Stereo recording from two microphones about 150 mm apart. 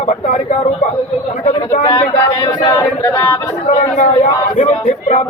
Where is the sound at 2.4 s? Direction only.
20° left (ahead or behind).